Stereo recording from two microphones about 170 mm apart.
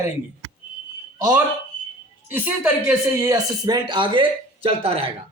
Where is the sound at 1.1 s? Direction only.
20° right (ahead or behind).